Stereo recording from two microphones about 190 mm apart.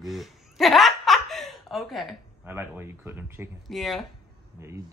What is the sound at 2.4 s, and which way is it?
Speech, 10° right (ahead or behind).